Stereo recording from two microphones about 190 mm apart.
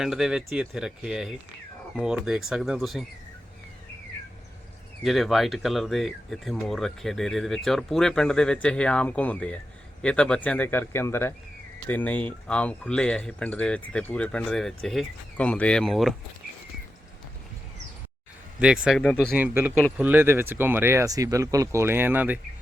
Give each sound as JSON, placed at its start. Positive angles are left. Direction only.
{"t": 0.0, "sound": "speech", "side_deg": -5}
{"t": 5.0, "sound": "speech", "side_deg": 0}
{"t": 18.6, "sound": "speech", "side_deg": -5}
{"t": 19.4, "sound": "speech", "side_deg": -10}